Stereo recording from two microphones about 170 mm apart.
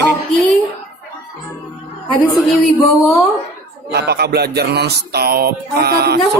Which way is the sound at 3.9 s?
70° right (ahead or behind).